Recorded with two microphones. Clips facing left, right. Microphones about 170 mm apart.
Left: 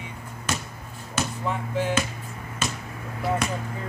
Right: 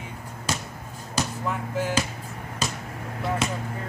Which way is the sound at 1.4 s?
5° right (ahead or behind).